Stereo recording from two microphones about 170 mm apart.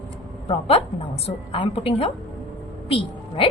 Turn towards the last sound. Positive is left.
turn(degrees=30)  # may be behind; listen again after turning